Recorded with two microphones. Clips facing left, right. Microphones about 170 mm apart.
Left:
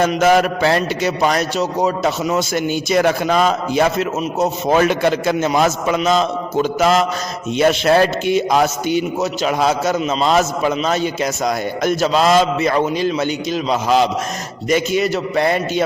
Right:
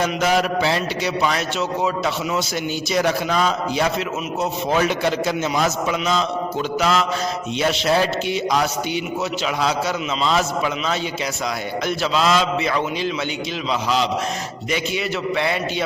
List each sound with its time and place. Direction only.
0.0 s a man's voice: 50° left (ahead or behind)
2.9 s a man's voice: 55° left (ahead or behind)